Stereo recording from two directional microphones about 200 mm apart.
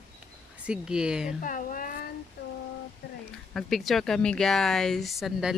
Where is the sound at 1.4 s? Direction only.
40° left (ahead or behind).